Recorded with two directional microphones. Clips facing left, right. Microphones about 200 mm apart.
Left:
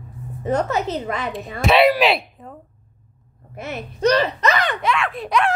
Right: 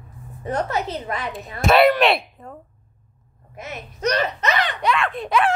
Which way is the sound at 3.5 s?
65° left (ahead or behind).